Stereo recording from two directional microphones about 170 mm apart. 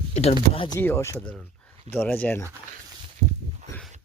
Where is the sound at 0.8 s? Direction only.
15° left (ahead or behind).